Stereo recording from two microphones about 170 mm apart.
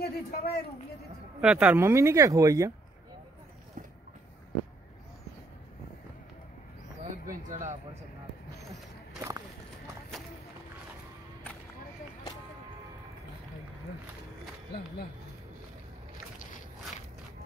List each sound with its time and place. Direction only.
0.0 s speech: 70° left (ahead or behind)
1.4 s speech: 5° right (ahead or behind)
7.0 s a sound: 50° right (ahead or behind)
10.1 s run: centre (ahead or behind)